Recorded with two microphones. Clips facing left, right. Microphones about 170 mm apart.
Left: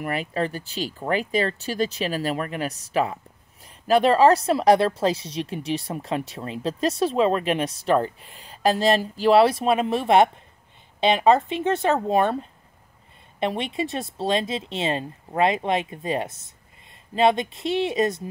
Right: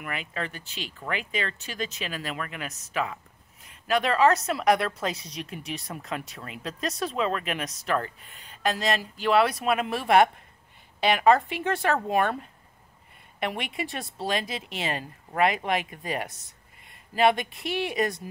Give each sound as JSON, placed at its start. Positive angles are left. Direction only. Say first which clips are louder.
{"t": 0.0, "sound": "a woman's voice", "louder": "left 8 dB", "side_deg": 35}